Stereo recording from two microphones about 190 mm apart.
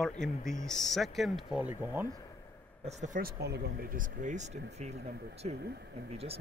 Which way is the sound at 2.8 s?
40° right (ahead or behind).